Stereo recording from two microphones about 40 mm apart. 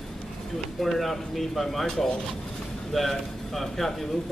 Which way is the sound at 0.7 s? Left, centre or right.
Centre.